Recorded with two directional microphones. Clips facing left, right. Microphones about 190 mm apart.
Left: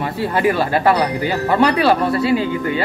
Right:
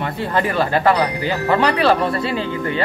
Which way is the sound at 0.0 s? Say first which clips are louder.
Left 3 dB; 10° left (ahead or behind).